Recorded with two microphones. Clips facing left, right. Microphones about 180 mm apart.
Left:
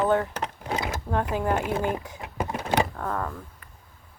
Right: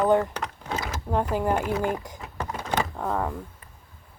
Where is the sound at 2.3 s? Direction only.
15° left (ahead or behind).